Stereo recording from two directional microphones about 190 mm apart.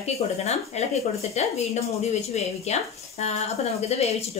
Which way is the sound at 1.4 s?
35° left (ahead or behind).